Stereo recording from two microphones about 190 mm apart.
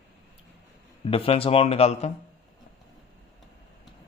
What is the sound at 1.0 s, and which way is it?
Speech, 30° left (ahead or behind).